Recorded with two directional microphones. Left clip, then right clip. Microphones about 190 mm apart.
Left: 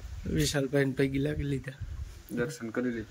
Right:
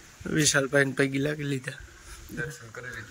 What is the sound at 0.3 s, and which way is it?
Speech, 10° left (ahead or behind).